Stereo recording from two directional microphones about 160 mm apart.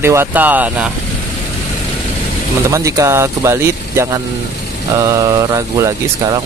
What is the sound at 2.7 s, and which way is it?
Speech, 20° right (ahead or behind).